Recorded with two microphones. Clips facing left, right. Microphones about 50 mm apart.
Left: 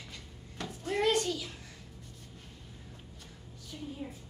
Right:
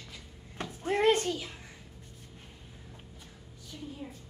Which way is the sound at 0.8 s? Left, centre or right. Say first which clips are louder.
Right 3 dB; right.